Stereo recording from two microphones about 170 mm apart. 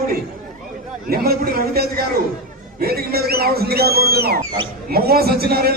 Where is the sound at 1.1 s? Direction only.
60° right (ahead or behind).